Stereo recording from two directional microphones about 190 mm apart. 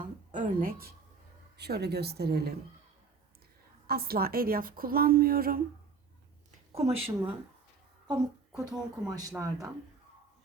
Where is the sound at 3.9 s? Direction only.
55° right (ahead or behind).